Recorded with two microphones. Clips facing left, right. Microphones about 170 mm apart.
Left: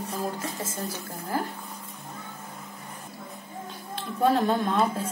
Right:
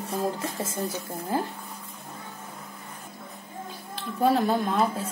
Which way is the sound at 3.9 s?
Centre (ahead or behind).